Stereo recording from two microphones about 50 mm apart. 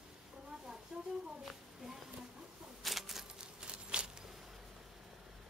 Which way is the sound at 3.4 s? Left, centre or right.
Centre.